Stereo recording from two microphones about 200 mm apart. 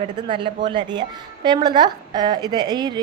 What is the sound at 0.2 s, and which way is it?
A woman's voice, 25° right (ahead or behind).